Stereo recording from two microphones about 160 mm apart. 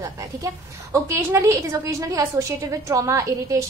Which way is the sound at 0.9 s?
15° right (ahead or behind).